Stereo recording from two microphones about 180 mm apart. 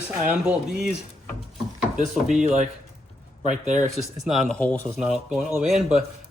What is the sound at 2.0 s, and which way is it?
Speech, 45° right (ahead or behind).